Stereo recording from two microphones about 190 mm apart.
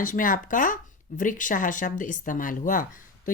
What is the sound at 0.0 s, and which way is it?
Speech, 45° left (ahead or behind).